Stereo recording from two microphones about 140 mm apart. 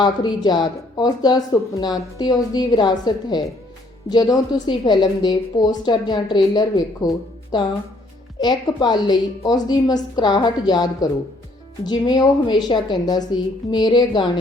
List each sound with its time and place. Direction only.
0.0 s a woman's voice: 30° left (ahead or behind)